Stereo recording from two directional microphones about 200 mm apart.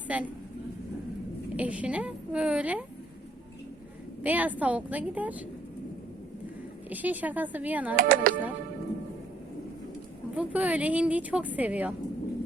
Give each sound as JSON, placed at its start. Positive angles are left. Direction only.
{"t": 0.1, "sound": "a woman's voice", "side_deg": -5}
{"t": 1.5, "sound": "a woman's voice", "side_deg": -5}
{"t": 4.2, "sound": "a woman's voice", "side_deg": -10}
{"t": 6.9, "sound": "a woman's voice", "side_deg": -10}
{"t": 7.9, "sound": "speech", "side_deg": -45}
{"t": 10.3, "sound": "a woman's voice", "side_deg": -5}